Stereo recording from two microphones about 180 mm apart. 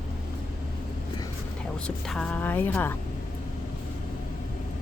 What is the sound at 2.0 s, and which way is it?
Speech, 5° left (ahead or behind).